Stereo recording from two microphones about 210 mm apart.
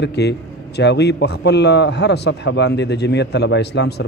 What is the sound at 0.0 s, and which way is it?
A man's voice, 55° left (ahead or behind).